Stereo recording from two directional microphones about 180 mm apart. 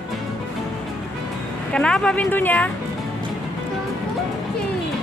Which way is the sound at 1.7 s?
5° left (ahead or behind).